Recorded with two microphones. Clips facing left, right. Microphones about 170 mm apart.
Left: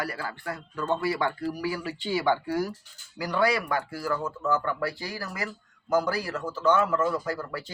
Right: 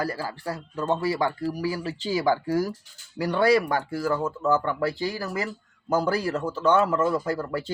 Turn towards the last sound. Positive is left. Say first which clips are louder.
# right 5 dB
turn(degrees=-30)  # may be behind; listen again after turning